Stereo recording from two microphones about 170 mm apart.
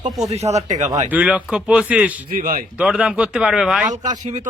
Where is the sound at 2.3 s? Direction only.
55° right (ahead or behind).